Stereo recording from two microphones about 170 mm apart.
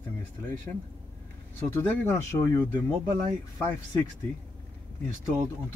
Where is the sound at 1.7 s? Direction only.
15° left (ahead or behind).